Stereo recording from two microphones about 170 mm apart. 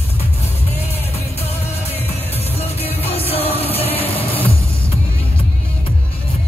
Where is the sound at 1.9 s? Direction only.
35° left (ahead or behind).